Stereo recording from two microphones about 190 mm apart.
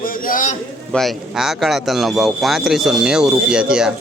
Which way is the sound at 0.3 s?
45° left (ahead or behind).